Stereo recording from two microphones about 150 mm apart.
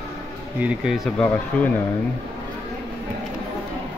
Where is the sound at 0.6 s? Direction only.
5° right (ahead or behind).